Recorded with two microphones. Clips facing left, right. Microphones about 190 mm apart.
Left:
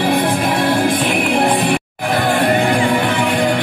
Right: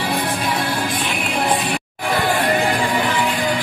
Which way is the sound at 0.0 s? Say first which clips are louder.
Left 6 dB; 55° left (ahead or behind).